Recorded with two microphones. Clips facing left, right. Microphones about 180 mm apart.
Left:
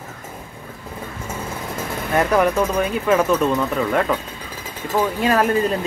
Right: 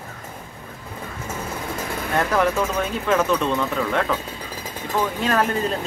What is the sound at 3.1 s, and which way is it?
Speech, 10° left (ahead or behind).